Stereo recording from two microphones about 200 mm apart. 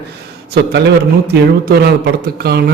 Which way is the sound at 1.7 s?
55° right (ahead or behind).